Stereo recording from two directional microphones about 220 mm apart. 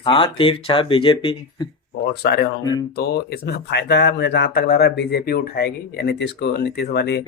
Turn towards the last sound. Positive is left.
turn(degrees=50)  # may be behind; listen again after turning